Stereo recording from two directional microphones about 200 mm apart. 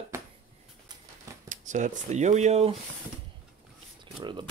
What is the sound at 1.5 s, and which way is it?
Speech, 40° right (ahead or behind).